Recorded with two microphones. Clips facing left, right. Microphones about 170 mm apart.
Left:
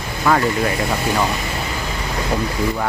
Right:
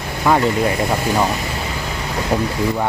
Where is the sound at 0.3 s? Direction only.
20° right (ahead or behind).